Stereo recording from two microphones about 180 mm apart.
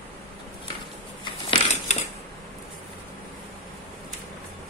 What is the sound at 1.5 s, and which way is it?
Crushing, 40° left (ahead or behind).